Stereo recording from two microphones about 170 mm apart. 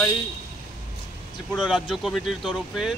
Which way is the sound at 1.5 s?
Centre (ahead or behind).